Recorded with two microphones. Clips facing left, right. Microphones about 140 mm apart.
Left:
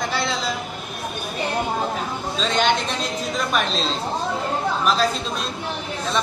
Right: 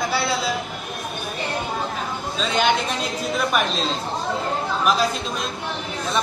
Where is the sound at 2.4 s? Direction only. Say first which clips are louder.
Even; 10° right (ahead or behind).